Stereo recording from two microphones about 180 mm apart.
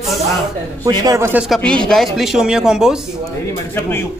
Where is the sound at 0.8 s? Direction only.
20° right (ahead or behind).